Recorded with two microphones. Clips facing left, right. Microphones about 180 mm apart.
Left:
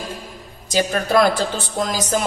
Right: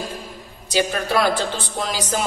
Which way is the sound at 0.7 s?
45° left (ahead or behind).